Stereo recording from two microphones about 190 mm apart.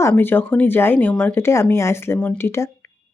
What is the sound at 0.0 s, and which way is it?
Speech, 10° left (ahead or behind).